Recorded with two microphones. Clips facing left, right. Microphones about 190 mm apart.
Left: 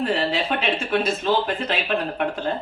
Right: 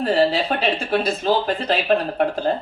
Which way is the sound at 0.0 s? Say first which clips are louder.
Right 4 dB; 35° right (ahead or behind).